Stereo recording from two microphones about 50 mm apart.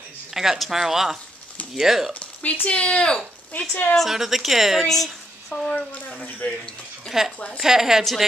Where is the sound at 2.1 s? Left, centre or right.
Left.